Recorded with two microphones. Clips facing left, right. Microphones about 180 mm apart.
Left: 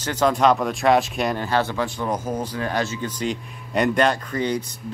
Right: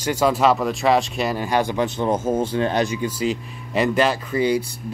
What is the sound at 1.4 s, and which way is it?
Speech, 15° right (ahead or behind).